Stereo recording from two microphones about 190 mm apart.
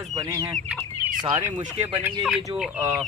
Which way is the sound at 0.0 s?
20° right (ahead or behind).